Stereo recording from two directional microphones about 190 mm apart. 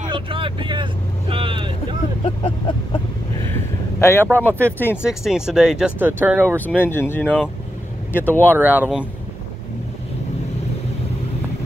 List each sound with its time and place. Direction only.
0.1 s vehicle: 25° right (ahead or behind)
2.2 s speech: 25° left (ahead or behind)
4.0 s speech: 10° left (ahead or behind)
5.0 s speech: 5° right (ahead or behind)
6.6 s speech: 10° left (ahead or behind)
8.5 s speech: 10° right (ahead or behind)